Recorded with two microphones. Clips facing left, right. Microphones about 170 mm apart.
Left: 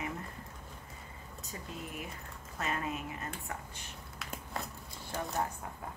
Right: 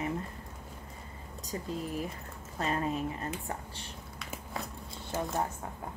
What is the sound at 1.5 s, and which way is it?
A woman's voice, 35° right (ahead or behind).